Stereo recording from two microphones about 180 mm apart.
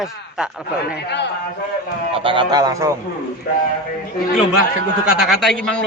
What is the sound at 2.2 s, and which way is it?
Speech, 25° right (ahead or behind).